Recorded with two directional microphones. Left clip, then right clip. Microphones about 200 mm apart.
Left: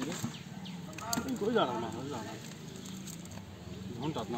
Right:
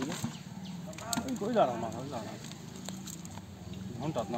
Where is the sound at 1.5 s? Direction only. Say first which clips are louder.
Right 5 dB; 30° right (ahead or behind).